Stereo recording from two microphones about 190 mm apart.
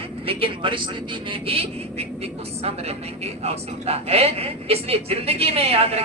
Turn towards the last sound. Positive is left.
turn(degrees=-30)  # may be behind; listen again after turning